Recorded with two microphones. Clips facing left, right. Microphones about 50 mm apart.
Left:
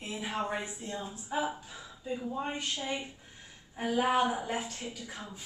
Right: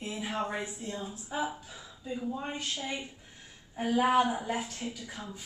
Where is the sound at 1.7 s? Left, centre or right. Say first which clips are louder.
Left 1 dB; centre.